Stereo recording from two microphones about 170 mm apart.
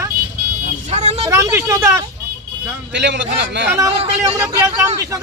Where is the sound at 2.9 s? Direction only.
90° right.